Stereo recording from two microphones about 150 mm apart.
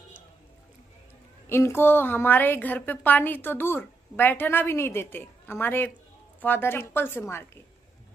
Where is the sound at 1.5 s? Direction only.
15° left (ahead or behind).